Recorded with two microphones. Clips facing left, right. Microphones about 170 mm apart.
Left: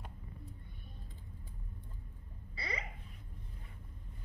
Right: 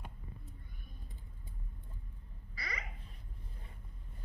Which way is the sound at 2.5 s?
30° left (ahead or behind).